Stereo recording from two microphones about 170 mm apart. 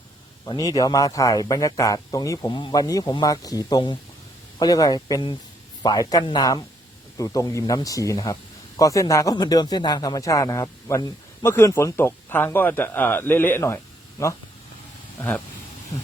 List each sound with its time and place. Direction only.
0.4 s speech: 25° left (ahead or behind)